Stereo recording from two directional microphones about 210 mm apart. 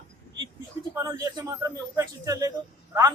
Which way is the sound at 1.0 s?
15° right (ahead or behind).